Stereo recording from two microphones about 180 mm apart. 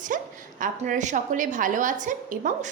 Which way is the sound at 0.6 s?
45° right (ahead or behind).